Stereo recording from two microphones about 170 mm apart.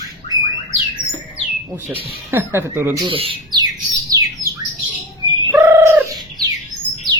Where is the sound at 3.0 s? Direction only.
30° right (ahead or behind).